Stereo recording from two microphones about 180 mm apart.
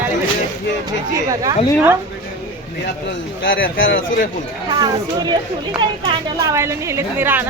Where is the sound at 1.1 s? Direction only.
20° right (ahead or behind).